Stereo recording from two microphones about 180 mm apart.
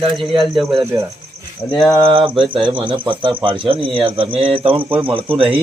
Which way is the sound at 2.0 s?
30° right (ahead or behind).